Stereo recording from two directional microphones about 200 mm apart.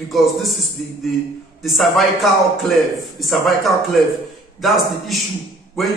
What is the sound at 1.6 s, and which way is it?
A man's voice, centre (ahead or behind).